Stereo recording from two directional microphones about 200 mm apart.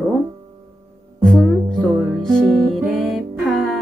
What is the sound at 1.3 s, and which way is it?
Music, 5° left (ahead or behind).